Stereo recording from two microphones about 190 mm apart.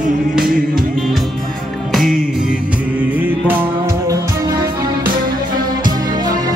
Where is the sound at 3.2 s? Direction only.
10° right (ahead or behind).